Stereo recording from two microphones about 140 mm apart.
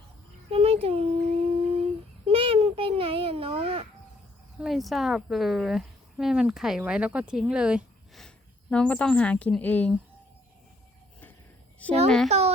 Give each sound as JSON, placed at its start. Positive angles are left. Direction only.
{"t": 0.5, "sound": "humming", "side_deg": -45}
{"t": 4.6, "sound": "speech", "side_deg": 0}
{"t": 8.7, "sound": "speech", "side_deg": 10}
{"t": 12.0, "sound": "speech", "side_deg": 5}